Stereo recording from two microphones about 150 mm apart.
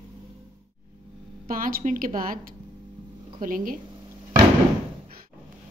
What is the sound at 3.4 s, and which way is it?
Speech, 65° right (ahead or behind).